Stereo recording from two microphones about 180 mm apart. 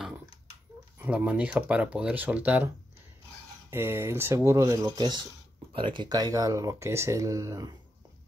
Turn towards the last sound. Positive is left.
turn(degrees=-15)  # may be behind; listen again after turning